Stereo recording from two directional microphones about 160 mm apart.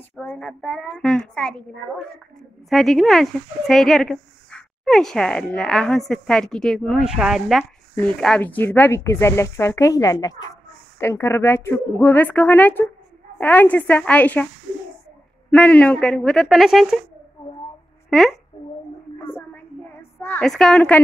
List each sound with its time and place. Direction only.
0.1 s a child's voice: centre (ahead or behind)
2.7 s speech: centre (ahead or behind)
15.5 s speech: 10° left (ahead or behind)
18.1 s speech: centre (ahead or behind)
18.6 s a sound: 45° left (ahead or behind)
19.1 s a sound: 10° left (ahead or behind)
20.4 s speech: 5° left (ahead or behind)